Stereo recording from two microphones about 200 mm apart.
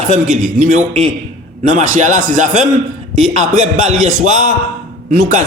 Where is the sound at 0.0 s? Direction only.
35° right (ahead or behind).